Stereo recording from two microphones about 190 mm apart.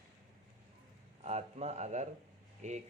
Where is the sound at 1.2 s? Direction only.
35° right (ahead or behind).